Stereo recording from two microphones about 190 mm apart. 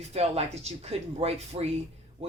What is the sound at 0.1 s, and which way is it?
Speech, 35° right (ahead or behind).